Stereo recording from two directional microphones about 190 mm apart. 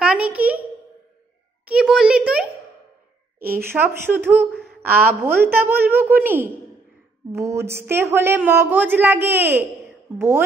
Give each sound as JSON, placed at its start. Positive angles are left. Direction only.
{"t": 0.0, "sound": "a sound", "side_deg": -5}
{"t": 1.7, "sound": "a child's voice", "side_deg": -5}
{"t": 3.3, "sound": "speech", "side_deg": -50}
{"t": 3.6, "sound": "speech", "side_deg": -10}
{"t": 4.5, "sound": "a sound", "side_deg": 0}
{"t": 4.8, "sound": "speech", "side_deg": -10}